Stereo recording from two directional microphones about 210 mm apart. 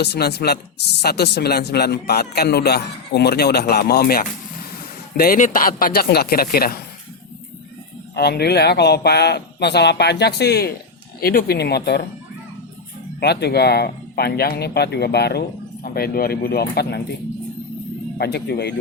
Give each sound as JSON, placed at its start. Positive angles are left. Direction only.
{"t": 0.0, "sound": "speech", "side_deg": 50}
{"t": 8.1, "sound": "speech", "side_deg": 50}
{"t": 13.1, "sound": "speech", "side_deg": 50}
{"t": 18.2, "sound": "speech", "side_deg": 50}